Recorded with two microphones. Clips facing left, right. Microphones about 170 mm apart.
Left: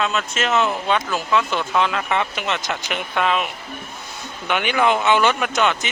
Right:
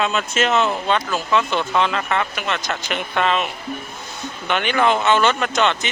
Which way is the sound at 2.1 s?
15° left (ahead or behind).